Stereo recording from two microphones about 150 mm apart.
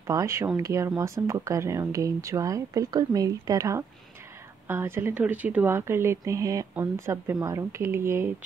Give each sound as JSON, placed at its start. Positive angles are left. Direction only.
{"t": 0.0, "sound": "speech", "side_deg": -20}